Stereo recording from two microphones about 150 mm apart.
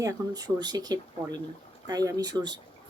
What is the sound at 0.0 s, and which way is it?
A woman's voice, 25° right (ahead or behind).